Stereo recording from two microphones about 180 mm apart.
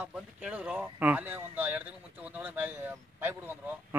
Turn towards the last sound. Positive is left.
turn(degrees=-10)  # may be behind; listen again after turning